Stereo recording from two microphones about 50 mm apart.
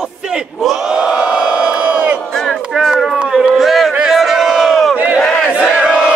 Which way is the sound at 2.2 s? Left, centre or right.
Centre.